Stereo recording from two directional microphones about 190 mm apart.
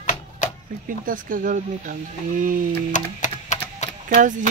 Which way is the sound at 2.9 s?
40° left (ahead or behind).